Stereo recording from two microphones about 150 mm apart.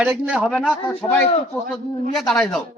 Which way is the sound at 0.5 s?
5° left (ahead or behind).